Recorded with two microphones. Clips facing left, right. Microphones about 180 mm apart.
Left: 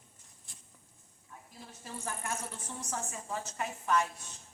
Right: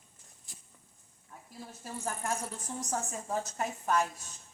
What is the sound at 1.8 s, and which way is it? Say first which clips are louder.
A woman's voice: right 3 dB; 45° right (ahead or behind).